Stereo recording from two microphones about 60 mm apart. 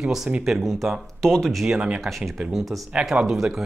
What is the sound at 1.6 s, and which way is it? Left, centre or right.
Speech, centre.